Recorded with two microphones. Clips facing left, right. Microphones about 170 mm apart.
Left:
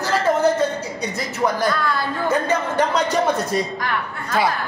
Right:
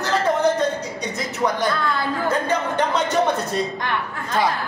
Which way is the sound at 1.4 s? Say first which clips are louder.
Left 1 dB; 5° left (ahead or behind).